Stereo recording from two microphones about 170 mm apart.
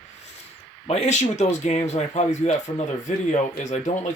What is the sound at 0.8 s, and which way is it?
Speech, 40° left (ahead or behind).